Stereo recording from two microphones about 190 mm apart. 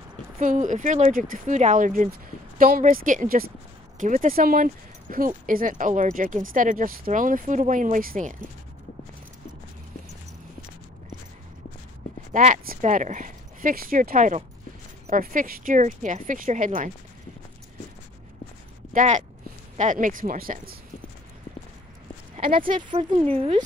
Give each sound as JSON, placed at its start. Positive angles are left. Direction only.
{"t": 0.4, "sound": "speech", "side_deg": -40}
{"t": 12.3, "sound": "speech", "side_deg": -40}
{"t": 18.9, "sound": "speech", "side_deg": -40}
{"t": 22.8, "sound": "speech", "side_deg": -30}